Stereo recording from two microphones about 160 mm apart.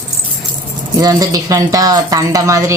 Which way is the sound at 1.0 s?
20° right (ahead or behind).